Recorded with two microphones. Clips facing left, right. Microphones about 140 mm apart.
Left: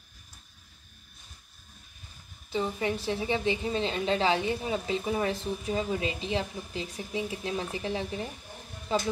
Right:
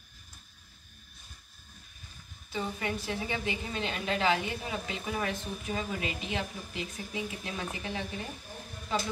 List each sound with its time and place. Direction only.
2.5 s a woman's voice: 25° left (ahead or behind)